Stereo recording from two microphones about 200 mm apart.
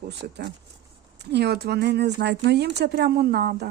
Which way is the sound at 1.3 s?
55° right (ahead or behind).